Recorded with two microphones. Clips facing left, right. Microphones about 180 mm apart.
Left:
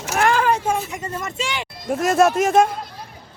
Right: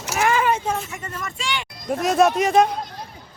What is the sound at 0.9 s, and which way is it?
Speech, 20° left (ahead or behind).